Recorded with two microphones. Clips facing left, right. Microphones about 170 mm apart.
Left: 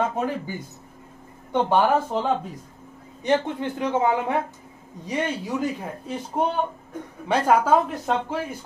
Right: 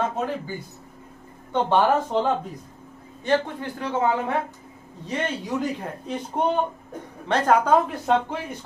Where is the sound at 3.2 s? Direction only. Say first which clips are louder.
Left 1 dB; 20° left (ahead or behind).